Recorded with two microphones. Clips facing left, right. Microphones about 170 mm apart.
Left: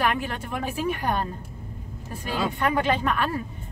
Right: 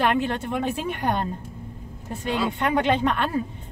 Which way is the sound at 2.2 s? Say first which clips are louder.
Right 1 dB; 20° right (ahead or behind).